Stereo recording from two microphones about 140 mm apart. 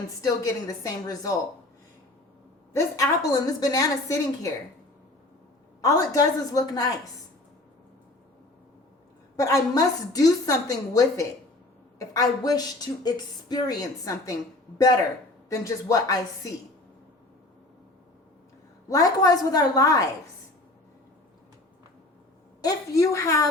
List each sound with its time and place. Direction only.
0.2 s a woman's voice: 25° left (ahead or behind)
2.7 s a woman's voice: 25° left (ahead or behind)
5.8 s a woman's voice: 25° left (ahead or behind)
9.3 s a woman's voice: 25° left (ahead or behind)
15.4 s a woman's voice: 25° left (ahead or behind)
18.9 s a woman's voice: 25° left (ahead or behind)
22.6 s a woman's voice: 20° left (ahead or behind)